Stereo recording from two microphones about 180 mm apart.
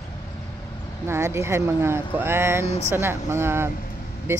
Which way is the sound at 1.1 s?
15° right (ahead or behind).